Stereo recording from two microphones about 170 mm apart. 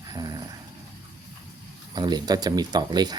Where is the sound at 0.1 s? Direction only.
20° right (ahead or behind).